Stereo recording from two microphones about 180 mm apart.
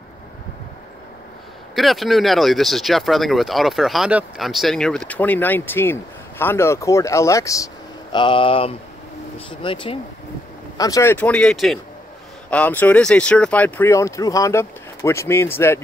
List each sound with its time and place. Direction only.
1.8 s speech: centre (ahead or behind); by 9.9 s 30° left (ahead or behind)
10.8 s speech: 15° left (ahead or behind)